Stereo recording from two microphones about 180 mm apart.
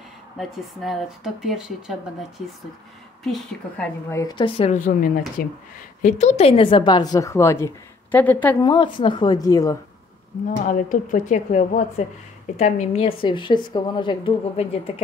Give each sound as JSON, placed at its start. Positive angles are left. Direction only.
{"t": 0.4, "sound": "speech", "side_deg": 0}
{"t": 3.3, "sound": "speech", "side_deg": 5}
{"t": 4.2, "sound": "a woman's voice", "side_deg": 20}
{"t": 4.6, "sound": "a woman's voice", "side_deg": 45}
{"t": 8.6, "sound": "a woman's voice", "side_deg": 30}
{"t": 10.6, "sound": "a woman's voice", "side_deg": 45}